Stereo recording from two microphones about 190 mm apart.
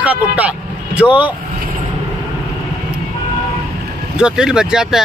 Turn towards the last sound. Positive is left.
turn(degrees=-5)  # may be behind; listen again after turning